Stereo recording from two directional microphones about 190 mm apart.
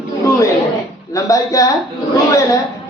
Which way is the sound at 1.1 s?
15° left (ahead or behind).